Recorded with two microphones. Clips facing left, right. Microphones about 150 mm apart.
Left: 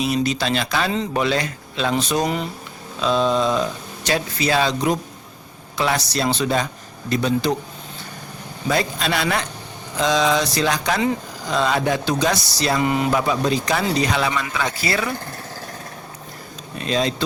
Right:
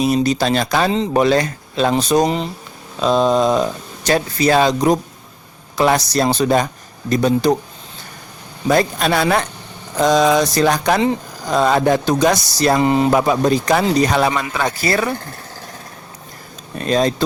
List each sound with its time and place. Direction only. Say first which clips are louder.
0.0 s speech: right 5 dB; 40° right (ahead or behind)
2.2 s speech: right 4 dB; 25° right (ahead or behind)
3.0 s speech: right 4 dB; 40° right (ahead or behind)
8.6 s speech: right 6 dB; 45° right (ahead or behind)
12.8 s speech: right 4 dB; 30° right (ahead or behind)
13.1 s speech: right 5 dB; 45° right (ahead or behind)
16.7 s speech: right 5 dB; 45° right (ahead or behind)